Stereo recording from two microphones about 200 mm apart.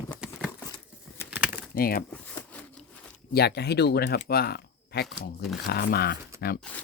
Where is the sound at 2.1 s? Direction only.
5° left (ahead or behind).